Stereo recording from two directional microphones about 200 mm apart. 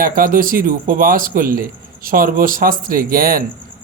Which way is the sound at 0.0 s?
45° right (ahead or behind).